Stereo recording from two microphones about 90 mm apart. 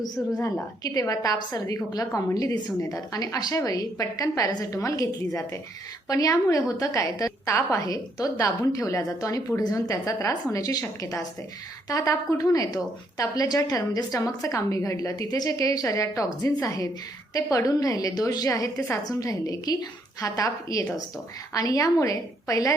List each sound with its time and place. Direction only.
0.9 s a woman's voice: 40° left (ahead or behind)